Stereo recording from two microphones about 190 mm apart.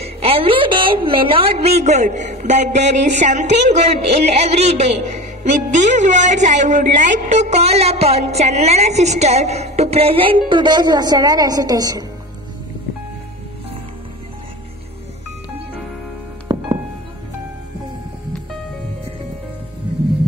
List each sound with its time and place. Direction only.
0.0 s a woman's voice: 30° right (ahead or behind)
16.5 s music: 25° right (ahead or behind)